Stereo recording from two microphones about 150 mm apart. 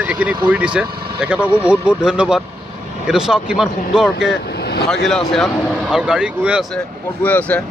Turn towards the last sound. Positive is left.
turn(degrees=10)  # may be behind; listen again after turning